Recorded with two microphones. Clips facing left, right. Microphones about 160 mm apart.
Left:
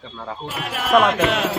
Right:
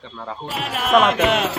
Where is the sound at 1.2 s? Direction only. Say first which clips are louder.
Right 1 dB; 20° right (ahead or behind).